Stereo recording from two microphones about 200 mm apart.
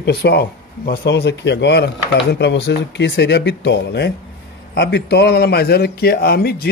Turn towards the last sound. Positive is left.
turn(degrees=50)  # may be behind; listen again after turning